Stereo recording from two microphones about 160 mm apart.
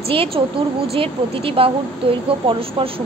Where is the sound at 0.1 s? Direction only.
35° right (ahead or behind).